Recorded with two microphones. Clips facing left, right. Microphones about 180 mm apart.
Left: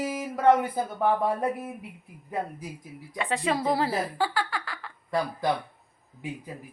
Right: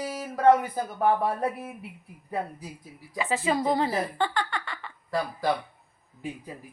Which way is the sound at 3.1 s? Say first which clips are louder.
Right 1 dB; centre (ahead or behind).